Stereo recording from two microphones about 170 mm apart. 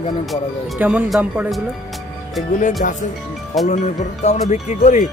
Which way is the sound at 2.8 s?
50° left (ahead or behind).